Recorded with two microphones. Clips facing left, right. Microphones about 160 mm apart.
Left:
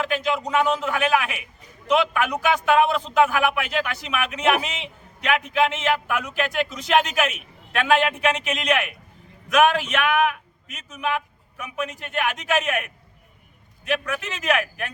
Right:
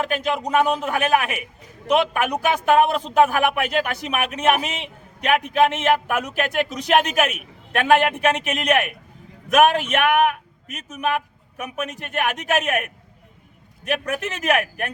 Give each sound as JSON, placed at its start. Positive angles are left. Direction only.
{"t": 0.0, "sound": "a man's voice", "side_deg": -40}
{"t": 14.0, "sound": "speech", "side_deg": -45}